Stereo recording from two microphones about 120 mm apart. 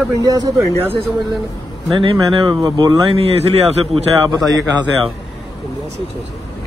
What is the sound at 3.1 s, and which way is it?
Speech, 55° right (ahead or behind).